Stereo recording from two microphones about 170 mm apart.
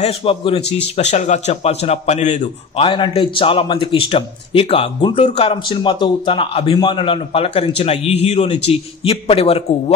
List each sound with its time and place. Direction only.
0.0 s a man's voice: 35° left (ahead or behind)
2.8 s a man's voice: 30° left (ahead or behind)